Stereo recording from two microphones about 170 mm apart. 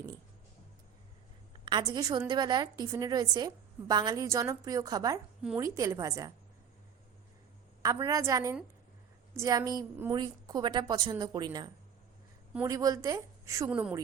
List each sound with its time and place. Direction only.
1.6 s a woman's voice: 25° right (ahead or behind)
7.8 s a woman's voice: 20° right (ahead or behind)
13.7 s speech: 10° right (ahead or behind)